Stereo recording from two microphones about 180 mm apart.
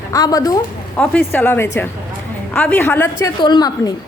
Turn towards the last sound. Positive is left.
turn(degrees=20)  # may be behind; listen again after turning